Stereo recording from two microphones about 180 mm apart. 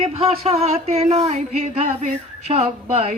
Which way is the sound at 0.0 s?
35° right (ahead or behind).